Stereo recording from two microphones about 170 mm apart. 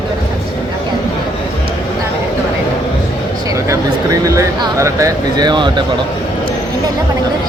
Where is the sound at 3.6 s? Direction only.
20° right (ahead or behind).